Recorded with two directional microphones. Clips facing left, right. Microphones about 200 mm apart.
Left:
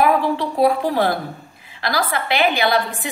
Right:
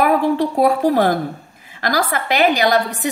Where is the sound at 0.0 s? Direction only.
50° right (ahead or behind).